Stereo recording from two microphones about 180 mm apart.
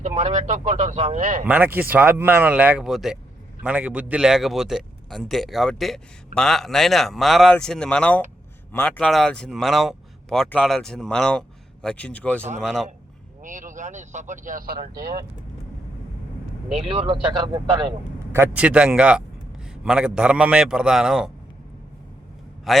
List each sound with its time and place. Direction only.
0.0 s speech: 40° right (ahead or behind)
1.5 s speech: 10° right (ahead or behind)
13.4 s speech: 45° right (ahead or behind)
16.9 s speech: 30° right (ahead or behind)
18.3 s speech: 10° right (ahead or behind)
22.7 s speech: centre (ahead or behind)